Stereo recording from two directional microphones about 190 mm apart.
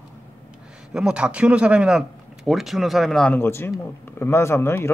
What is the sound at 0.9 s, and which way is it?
Speech, 5° right (ahead or behind).